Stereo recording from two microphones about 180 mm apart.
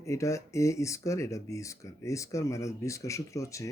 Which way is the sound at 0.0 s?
15° left (ahead or behind).